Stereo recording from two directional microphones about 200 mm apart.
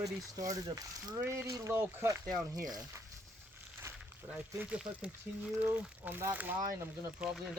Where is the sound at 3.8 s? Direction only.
10° right (ahead or behind).